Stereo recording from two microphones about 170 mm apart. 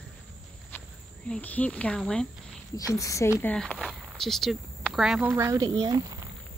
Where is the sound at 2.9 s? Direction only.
20° left (ahead or behind).